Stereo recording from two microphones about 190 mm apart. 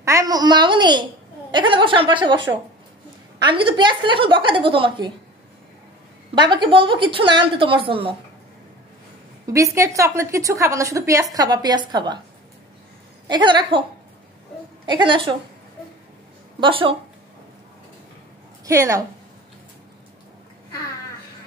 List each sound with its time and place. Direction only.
0.0 s a woman's voice: 15° right (ahead or behind)
3.4 s a woman's voice: 25° right (ahead or behind)
6.3 s a woman's voice: 25° right (ahead or behind)
9.8 s a woman's voice: 15° right (ahead or behind)
13.3 s a woman's voice: 25° right (ahead or behind)
14.9 s a woman's voice: 25° right (ahead or behind)
16.5 s speech: 25° right (ahead or behind)
18.7 s a woman's voice: 15° right (ahead or behind)